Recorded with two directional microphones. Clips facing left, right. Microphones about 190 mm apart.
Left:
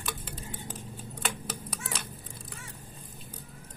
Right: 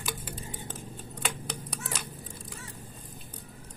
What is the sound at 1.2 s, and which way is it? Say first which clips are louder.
Typewriter: even; centre (ahead or behind).